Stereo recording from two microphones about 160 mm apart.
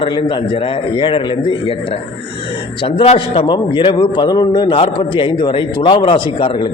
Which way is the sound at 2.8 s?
30° left (ahead or behind).